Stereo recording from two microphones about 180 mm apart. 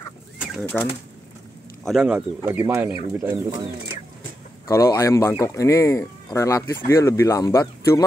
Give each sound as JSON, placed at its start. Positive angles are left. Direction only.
{"t": 0.7, "sound": "speech", "side_deg": 5}
{"t": 4.6, "sound": "speech", "side_deg": 15}